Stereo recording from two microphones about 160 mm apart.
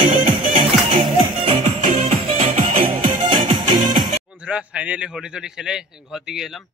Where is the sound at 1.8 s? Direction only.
50° right (ahead or behind).